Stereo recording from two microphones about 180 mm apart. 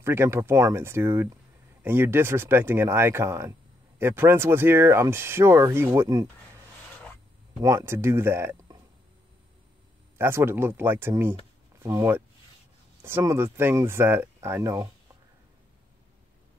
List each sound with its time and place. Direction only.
0.0 s speech: 15° right (ahead or behind)
7.6 s speech: 15° right (ahead or behind)
10.1 s speech: 15° right (ahead or behind)